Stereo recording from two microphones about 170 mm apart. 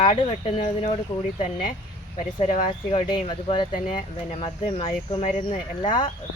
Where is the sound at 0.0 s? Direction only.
35° left (ahead or behind).